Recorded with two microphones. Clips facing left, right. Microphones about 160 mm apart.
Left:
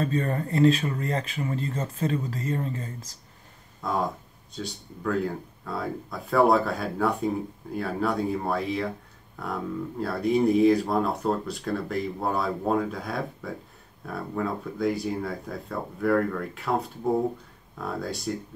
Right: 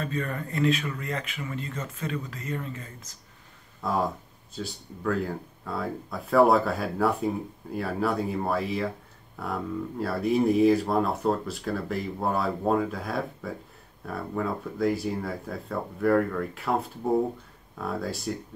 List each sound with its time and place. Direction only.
0.0 s speech: 35° left (ahead or behind)
3.8 s speech: 5° right (ahead or behind)